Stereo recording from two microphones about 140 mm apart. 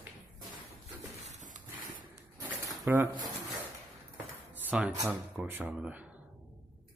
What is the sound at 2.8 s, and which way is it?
Speech, 15° right (ahead or behind).